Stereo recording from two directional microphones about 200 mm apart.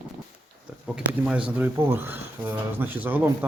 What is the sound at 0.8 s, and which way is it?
Speech, 5° right (ahead or behind).